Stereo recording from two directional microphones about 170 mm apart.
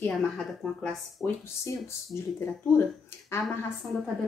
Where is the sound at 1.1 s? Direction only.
15° left (ahead or behind).